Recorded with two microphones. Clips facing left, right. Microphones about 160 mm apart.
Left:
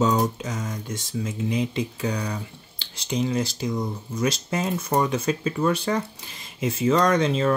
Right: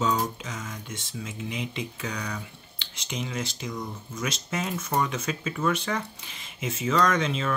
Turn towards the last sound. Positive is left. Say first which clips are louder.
# left 4 dB
turn(degrees=35)  # may be behind; listen again after turning